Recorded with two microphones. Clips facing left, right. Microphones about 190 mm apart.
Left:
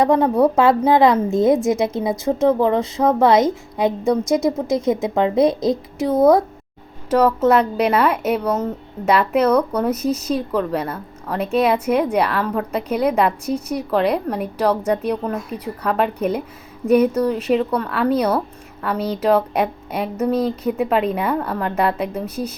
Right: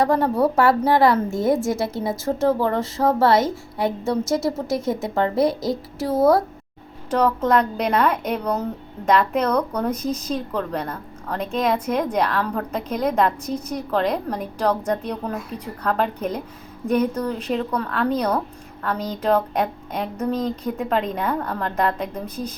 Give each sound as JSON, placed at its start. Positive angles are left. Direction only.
{"t": 0.0, "sound": "a woman's voice", "side_deg": 20}
{"t": 6.1, "sound": "speech", "side_deg": -5}
{"t": 7.1, "sound": "a woman's voice", "side_deg": 5}